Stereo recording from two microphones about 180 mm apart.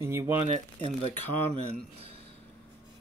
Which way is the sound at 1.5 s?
35° right (ahead or behind).